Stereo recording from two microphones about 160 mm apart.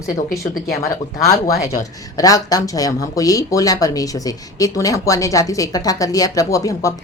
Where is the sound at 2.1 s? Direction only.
20° left (ahead or behind).